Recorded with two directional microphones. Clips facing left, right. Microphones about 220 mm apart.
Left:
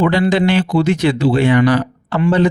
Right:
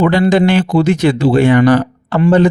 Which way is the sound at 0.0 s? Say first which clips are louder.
Right 3 dB; 45° right (ahead or behind).